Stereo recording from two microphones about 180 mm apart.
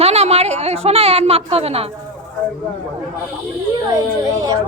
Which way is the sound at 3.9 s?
20° right (ahead or behind).